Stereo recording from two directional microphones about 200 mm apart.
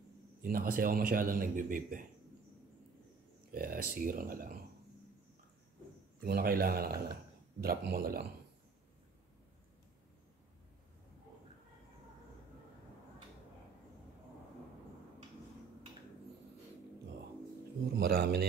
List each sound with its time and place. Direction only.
0.4 s a man's voice: 45° right (ahead or behind)
3.5 s a man's voice: 45° right (ahead or behind)
6.2 s a man's voice: 50° right (ahead or behind)
17.9 s a man's voice: 50° right (ahead or behind)